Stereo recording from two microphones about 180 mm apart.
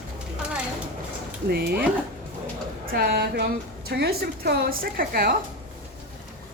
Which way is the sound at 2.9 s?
60° right (ahead or behind).